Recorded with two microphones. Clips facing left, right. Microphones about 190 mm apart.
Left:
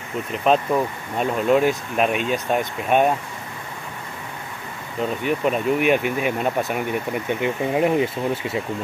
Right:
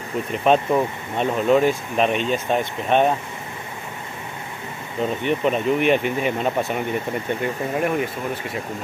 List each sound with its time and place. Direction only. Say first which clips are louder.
0.3 s speech: right 1 dB; centre (ahead or behind)
5.2 s speech: even; 5° left (ahead or behind); by 8.5 s 25° left (ahead or behind)